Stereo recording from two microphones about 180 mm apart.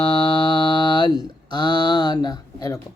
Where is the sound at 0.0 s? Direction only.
30° left (ahead or behind).